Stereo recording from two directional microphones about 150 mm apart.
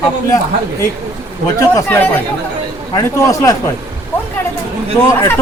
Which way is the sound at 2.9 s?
25° left (ahead or behind).